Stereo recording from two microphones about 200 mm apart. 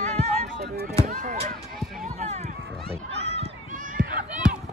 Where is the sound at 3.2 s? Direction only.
30° right (ahead or behind).